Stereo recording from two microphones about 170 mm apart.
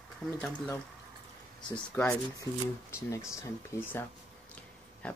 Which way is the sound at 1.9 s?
15° left (ahead or behind).